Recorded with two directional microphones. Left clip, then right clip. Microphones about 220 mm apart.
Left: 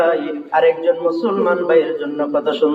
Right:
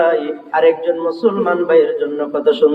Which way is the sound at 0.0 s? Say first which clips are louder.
Right 2 dB; 40° right (ahead or behind).